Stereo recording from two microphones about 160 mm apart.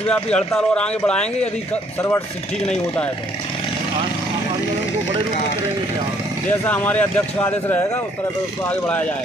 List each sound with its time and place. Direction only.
0.0 s speech: 5° left (ahead or behind)
2.0 s speech: 15° left (ahead or behind)
6.6 s speech: 10° left (ahead or behind)